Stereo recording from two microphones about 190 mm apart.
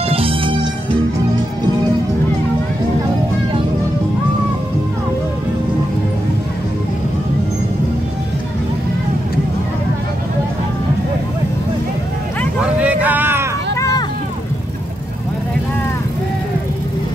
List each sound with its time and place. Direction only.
0.0 s music: 30° right (ahead or behind)
12.5 s a sound: 10° right (ahead or behind)
13.7 s vehicle: 15° left (ahead or behind)